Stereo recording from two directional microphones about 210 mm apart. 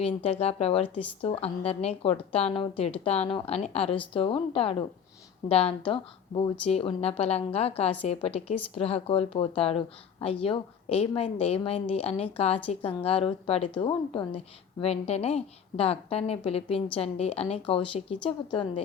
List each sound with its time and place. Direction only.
0.0 s a woman's voice: 30° left (ahead or behind)